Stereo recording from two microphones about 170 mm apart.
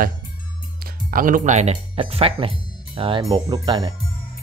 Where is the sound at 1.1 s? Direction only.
55° right (ahead or behind).